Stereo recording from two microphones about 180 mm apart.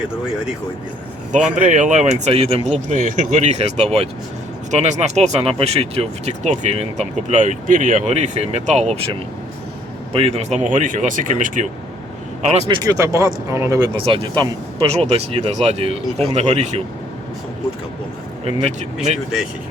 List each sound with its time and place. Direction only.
1.5 s speech: 45° right (ahead or behind)
10.1 s speech: 35° right (ahead or behind)
10.6 s speech: 45° right (ahead or behind)
12.6 s speech: 20° right (ahead or behind)
18.4 s speech: 40° right (ahead or behind)